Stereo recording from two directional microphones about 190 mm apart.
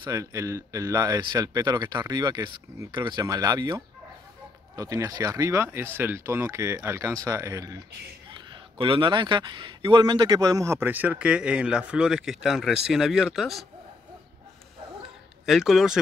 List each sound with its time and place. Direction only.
0.0 s speech: 15° right (ahead or behind); by 13.7 s centre (ahead or behind)
15.4 s a man's voice: centre (ahead or behind)